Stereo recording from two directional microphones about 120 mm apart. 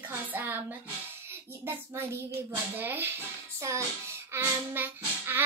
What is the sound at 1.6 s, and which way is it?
A child's voice, 20° right (ahead or behind).